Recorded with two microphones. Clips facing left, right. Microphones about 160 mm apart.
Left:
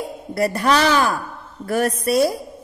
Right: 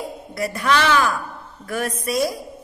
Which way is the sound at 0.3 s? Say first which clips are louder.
Left 3 dB; 35° left (ahead or behind).